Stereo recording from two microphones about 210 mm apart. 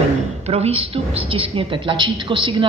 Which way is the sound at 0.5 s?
30° right (ahead or behind).